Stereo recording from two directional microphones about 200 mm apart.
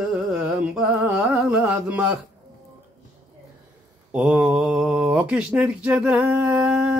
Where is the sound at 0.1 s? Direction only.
5° right (ahead or behind).